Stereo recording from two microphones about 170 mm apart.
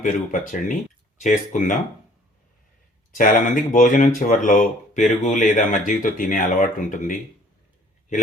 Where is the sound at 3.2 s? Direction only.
50° left (ahead or behind).